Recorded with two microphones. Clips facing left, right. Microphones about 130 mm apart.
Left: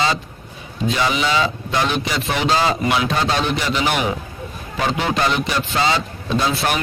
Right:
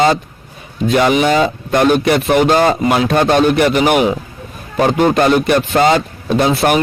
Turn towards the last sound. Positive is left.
turn(degrees=-50)  # may be behind; listen again after turning